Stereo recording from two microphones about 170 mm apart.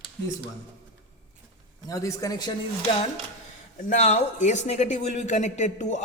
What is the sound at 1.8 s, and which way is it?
Speech, 20° left (ahead or behind).